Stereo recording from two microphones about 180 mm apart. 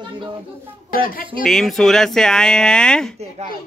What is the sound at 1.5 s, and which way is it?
Speech, centre (ahead or behind).